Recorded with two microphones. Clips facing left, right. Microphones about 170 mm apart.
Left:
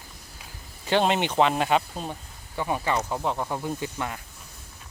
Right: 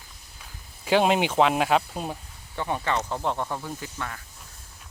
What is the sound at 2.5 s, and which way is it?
Speech, 10° left (ahead or behind).